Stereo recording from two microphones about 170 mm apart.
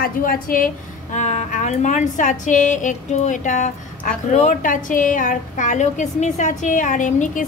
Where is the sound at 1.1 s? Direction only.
45° left (ahead or behind).